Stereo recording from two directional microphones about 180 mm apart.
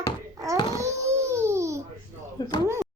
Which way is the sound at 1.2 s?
15° right (ahead or behind).